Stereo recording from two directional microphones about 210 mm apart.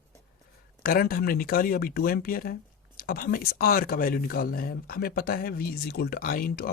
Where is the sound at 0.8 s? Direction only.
45° left (ahead or behind).